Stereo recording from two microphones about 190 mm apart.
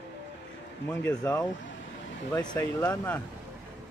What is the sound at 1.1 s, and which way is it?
Speech, 20° left (ahead or behind).